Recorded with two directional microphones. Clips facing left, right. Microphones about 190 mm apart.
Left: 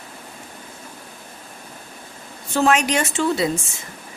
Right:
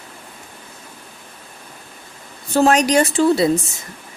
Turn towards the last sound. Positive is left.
turn(degrees=-35)  # may be behind; listen again after turning